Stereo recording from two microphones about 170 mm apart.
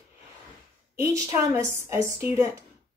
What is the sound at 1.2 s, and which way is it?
Speech, 15° right (ahead or behind).